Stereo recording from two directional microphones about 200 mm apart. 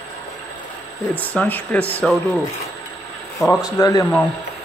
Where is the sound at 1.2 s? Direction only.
10° left (ahead or behind).